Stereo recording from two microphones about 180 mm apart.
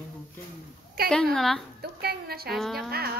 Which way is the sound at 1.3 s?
Centre (ahead or behind).